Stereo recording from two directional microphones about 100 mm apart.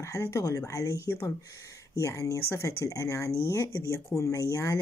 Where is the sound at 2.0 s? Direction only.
30° left (ahead or behind).